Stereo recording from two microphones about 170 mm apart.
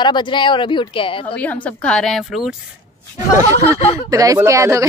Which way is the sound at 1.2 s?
10° left (ahead or behind).